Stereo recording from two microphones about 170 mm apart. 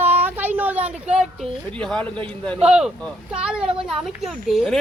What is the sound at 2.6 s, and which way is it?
Speech, 5° right (ahead or behind).